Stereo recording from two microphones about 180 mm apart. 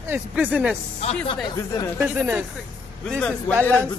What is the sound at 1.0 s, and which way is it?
Speech, 30° left (ahead or behind).